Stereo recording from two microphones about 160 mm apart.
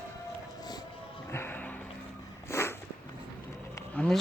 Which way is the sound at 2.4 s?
15° left (ahead or behind).